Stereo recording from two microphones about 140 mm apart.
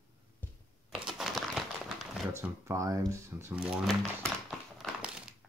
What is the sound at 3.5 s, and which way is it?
Speech, 5° right (ahead or behind).